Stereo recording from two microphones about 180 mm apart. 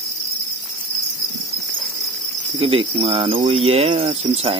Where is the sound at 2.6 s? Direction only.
35° right (ahead or behind).